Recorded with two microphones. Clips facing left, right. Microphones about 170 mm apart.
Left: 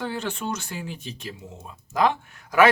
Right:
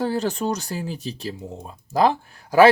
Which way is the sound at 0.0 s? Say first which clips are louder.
Right 6 dB; 40° right (ahead or behind).